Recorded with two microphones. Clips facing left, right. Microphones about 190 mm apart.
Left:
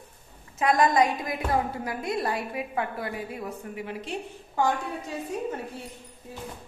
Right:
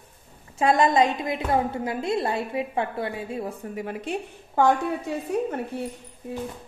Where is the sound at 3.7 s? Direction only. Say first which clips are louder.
Right 6 dB; 50° right (ahead or behind).